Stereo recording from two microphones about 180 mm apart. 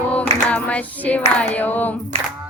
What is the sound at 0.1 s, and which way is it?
Female singing, 5° left (ahead or behind).